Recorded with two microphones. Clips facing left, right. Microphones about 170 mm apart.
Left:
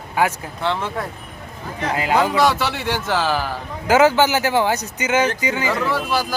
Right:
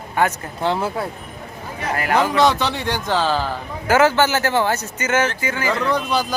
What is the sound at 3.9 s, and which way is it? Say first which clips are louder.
Speech: left 1 dB; 15° left (ahead or behind).